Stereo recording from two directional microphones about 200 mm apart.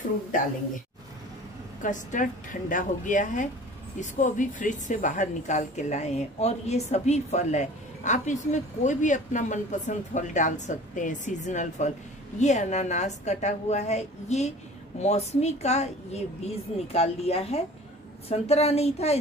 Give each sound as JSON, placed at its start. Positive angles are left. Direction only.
{"t": 1.8, "sound": "speech", "side_deg": 40}